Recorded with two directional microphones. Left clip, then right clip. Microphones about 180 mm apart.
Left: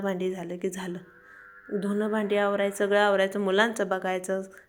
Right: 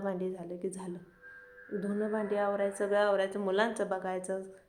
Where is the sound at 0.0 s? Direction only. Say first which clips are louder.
Left 6 dB; 25° left (ahead or behind).